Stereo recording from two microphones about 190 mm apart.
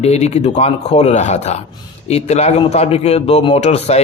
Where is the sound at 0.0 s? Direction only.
35° left (ahead or behind).